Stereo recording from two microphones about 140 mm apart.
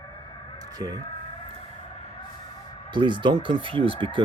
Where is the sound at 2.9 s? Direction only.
35° right (ahead or behind).